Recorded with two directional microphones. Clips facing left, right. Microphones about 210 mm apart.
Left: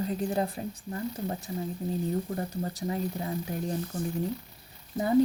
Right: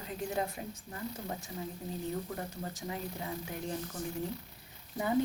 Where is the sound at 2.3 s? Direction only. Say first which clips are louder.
Left 7 dB; 35° left (ahead or behind).